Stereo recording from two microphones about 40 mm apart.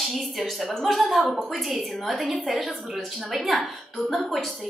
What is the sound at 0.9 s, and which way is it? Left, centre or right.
A woman's voice, centre.